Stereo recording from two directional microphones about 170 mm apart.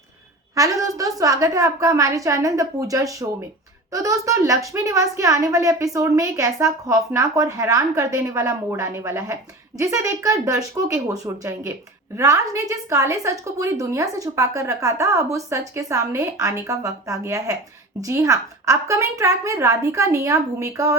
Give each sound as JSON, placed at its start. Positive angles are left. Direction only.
{"t": 0.5, "sound": "speech", "side_deg": -20}